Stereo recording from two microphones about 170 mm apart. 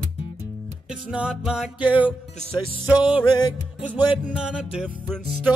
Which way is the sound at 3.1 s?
25° left (ahead or behind).